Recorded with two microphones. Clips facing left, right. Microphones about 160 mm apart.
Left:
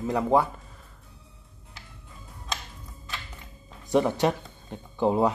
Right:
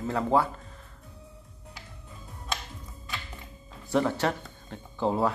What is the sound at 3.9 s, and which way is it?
Speech, 15° left (ahead or behind).